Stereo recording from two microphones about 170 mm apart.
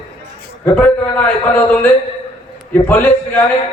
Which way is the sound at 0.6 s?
10° left (ahead or behind).